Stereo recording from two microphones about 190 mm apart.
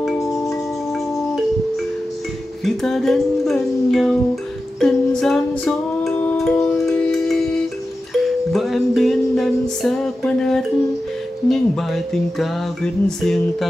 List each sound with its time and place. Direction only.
0.2 s wind chime: 15° left (ahead or behind)
2.6 s music: centre (ahead or behind)
7.0 s shofar: 5° left (ahead or behind)
8.2 s music: centre (ahead or behind)